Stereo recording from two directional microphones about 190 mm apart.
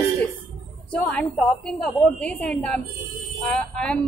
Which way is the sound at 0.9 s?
5° left (ahead or behind).